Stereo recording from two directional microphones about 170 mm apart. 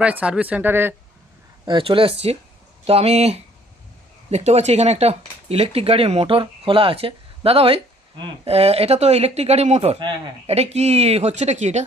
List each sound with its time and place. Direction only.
0.0 s speech: 5° right (ahead or behind)
1.7 s speech: 30° right (ahead or behind)